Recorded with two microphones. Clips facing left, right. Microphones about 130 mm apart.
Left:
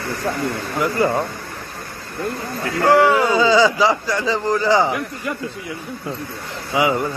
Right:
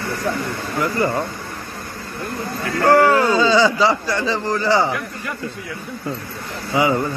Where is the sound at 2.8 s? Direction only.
15° left (ahead or behind).